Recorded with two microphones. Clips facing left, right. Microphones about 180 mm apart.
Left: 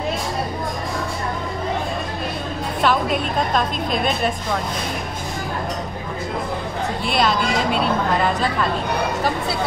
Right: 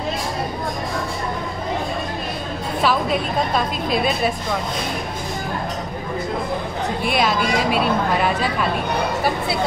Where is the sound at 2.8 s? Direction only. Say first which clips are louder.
Even; 5° right (ahead or behind).